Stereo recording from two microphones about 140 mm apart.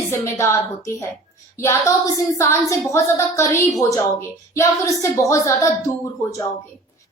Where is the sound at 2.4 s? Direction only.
20° left (ahead or behind).